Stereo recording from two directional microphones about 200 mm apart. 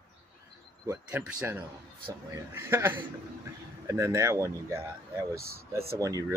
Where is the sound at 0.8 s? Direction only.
10° right (ahead or behind).